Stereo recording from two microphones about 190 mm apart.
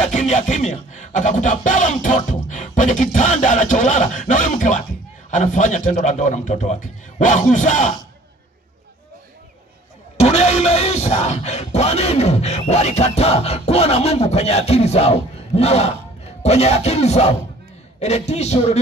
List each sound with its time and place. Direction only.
0.0 s music: 40° left (ahead or behind)
10.1 s music: 35° left (ahead or behind)